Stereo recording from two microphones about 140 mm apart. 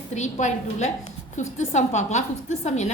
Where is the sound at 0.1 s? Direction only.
55° left (ahead or behind).